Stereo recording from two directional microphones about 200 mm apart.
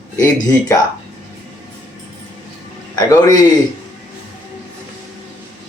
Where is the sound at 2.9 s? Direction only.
15° left (ahead or behind).